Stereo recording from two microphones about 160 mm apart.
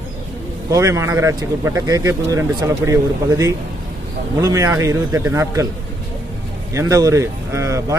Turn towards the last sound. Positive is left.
turn(degrees=-20)  # may be behind; listen again after turning